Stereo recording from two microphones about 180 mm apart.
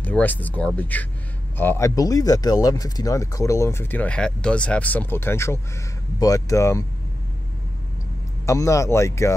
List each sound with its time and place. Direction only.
0.0 s speech: 10° left (ahead or behind)
8.5 s speech: 15° left (ahead or behind)